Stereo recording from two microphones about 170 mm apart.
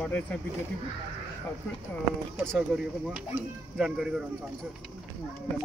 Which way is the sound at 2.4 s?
Centre (ahead or behind).